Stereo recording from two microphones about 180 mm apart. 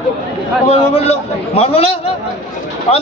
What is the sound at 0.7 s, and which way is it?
A man's voice, 35° left (ahead or behind).